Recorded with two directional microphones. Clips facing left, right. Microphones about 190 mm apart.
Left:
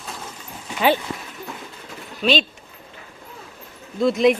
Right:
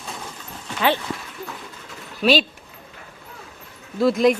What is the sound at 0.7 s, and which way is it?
Dog, 15° left (ahead or behind).